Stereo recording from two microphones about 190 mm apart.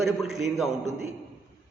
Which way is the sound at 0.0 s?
Centre (ahead or behind).